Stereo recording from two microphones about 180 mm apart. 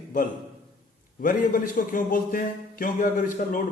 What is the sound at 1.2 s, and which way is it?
A man's voice, 50° left (ahead or behind).